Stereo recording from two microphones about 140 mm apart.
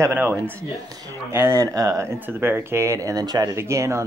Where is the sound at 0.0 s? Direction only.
15° right (ahead or behind).